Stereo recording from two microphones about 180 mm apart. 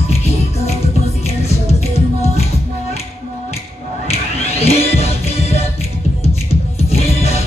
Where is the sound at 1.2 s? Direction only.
35° left (ahead or behind).